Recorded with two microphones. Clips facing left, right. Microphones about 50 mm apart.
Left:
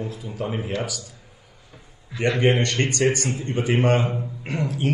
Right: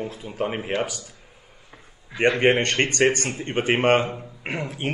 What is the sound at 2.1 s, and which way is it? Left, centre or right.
Speech, right.